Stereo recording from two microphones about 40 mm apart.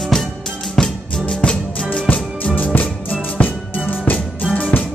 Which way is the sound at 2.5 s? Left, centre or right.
Left.